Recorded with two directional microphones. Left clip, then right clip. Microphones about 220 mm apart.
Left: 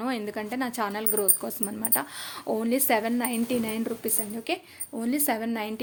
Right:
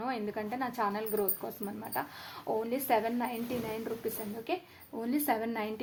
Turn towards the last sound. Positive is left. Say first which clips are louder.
# left 3 dB
turn(degrees=25)  # may be behind; listen again after turning